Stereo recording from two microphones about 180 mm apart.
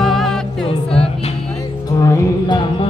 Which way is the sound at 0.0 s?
Centre (ahead or behind).